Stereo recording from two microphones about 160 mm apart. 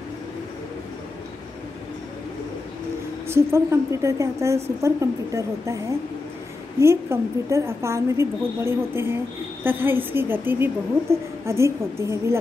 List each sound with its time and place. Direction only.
3.3 s a woman's voice: 15° right (ahead or behind)
6.8 s a woman's voice: 15° right (ahead or behind)